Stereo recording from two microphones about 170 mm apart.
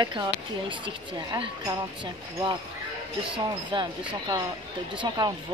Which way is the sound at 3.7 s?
30° right (ahead or behind).